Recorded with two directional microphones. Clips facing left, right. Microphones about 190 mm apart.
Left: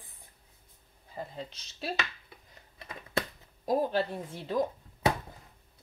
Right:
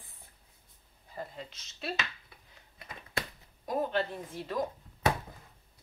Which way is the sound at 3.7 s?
35° left (ahead or behind).